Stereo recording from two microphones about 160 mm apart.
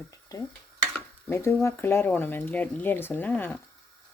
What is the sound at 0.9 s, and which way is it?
Speech, 15° left (ahead or behind).